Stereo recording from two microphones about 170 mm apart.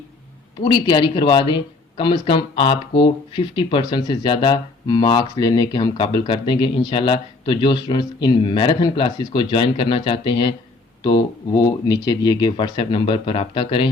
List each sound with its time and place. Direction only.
0.6 s speech: 25° left (ahead or behind)